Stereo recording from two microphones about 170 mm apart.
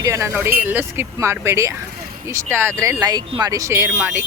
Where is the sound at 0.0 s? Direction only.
15° right (ahead or behind).